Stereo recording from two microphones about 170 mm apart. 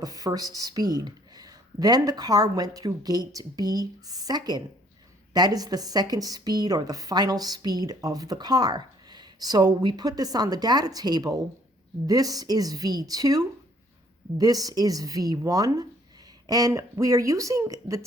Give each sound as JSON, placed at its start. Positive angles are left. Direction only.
{"t": 0.0, "sound": "speech", "side_deg": -20}